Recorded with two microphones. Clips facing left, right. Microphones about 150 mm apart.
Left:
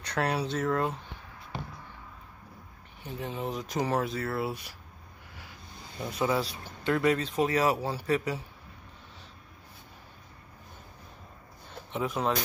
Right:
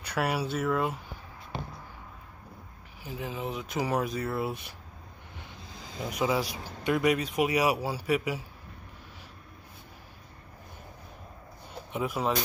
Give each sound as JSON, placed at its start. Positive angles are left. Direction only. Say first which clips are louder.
{"t": 0.0, "sound": "speech", "louder": "even", "side_deg": -10}
{"t": 3.0, "sound": "speech", "louder": "even", "side_deg": -5}
{"t": 5.9, "sound": "speech", "louder": "even", "side_deg": -15}
{"t": 11.9, "sound": "speech", "louder": "even", "side_deg": -10}